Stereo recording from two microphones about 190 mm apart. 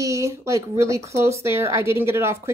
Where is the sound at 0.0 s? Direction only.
15° right (ahead or behind).